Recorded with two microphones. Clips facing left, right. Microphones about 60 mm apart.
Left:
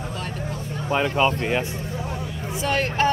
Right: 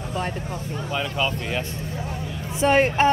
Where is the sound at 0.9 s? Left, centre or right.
Left.